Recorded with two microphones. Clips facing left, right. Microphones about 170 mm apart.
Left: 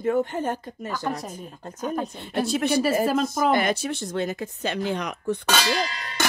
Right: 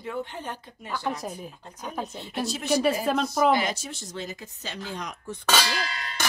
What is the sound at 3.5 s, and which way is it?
Speech, 60° left (ahead or behind).